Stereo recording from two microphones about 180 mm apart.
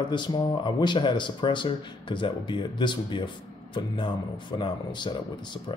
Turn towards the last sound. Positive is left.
turn(degrees=25)  # may be behind; listen again after turning